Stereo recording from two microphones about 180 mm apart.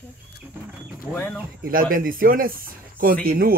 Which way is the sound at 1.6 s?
50° right (ahead or behind).